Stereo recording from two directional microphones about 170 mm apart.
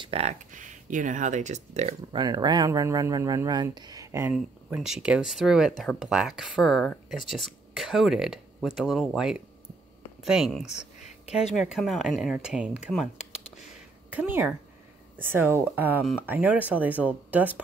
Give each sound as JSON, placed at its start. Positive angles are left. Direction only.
{"t": 0.0, "sound": "speech", "side_deg": -35}
{"t": 2.1, "sound": "speech", "side_deg": -25}
{"t": 14.1, "sound": "speech", "side_deg": -10}